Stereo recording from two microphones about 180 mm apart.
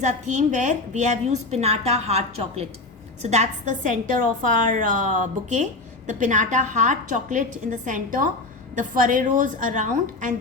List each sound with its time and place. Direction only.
0.0 s a woman's voice: 40° right (ahead or behind)